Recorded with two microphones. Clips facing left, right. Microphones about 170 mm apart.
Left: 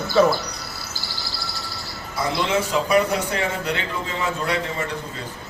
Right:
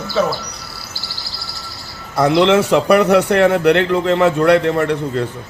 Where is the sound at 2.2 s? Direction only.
70° right (ahead or behind).